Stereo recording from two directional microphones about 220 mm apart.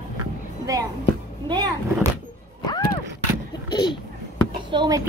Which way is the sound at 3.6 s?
20° left (ahead or behind).